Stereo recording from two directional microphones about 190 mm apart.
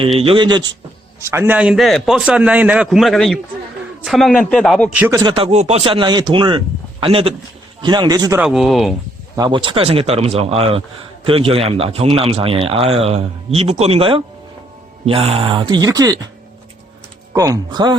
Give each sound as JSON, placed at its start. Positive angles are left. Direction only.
{"t": 0.2, "sound": "speech", "side_deg": -25}
{"t": 1.3, "sound": "a man's voice", "side_deg": -10}
{"t": 5.2, "sound": "speech", "side_deg": -25}
{"t": 8.4, "sound": "a man's voice", "side_deg": 0}
{"t": 9.3, "sound": "speech", "side_deg": -20}
{"t": 17.3, "sound": "speech", "side_deg": -20}